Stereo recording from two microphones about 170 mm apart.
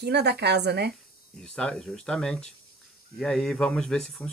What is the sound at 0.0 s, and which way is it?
Speech, 80° right.